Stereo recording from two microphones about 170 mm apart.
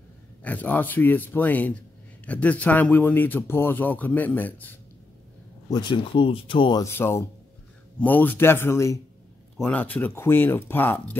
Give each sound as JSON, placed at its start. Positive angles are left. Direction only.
{"t": 0.4, "sound": "speech", "side_deg": 10}
{"t": 5.7, "sound": "speech", "side_deg": 25}
{"t": 6.9, "sound": "speech", "side_deg": 15}